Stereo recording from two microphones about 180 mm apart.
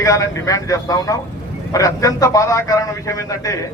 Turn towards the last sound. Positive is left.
turn(degrees=20)  # may be behind; listen again after turning